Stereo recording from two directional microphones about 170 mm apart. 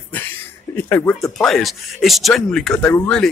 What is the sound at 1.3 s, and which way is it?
Speech, centre (ahead or behind).